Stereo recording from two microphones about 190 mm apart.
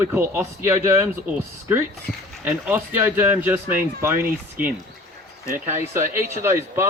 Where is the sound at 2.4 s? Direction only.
10° right (ahead or behind).